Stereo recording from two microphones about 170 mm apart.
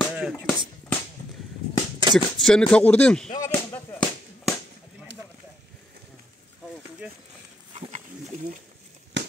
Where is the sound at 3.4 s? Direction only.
15° left (ahead or behind).